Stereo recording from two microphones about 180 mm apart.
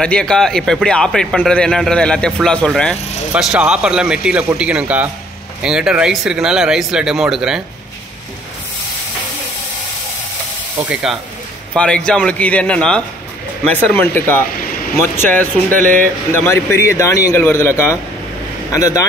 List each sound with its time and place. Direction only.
0.0 s speech: 5° left (ahead or behind)
10.9 s speech: 5° right (ahead or behind); by 19.0 s 20° left (ahead or behind)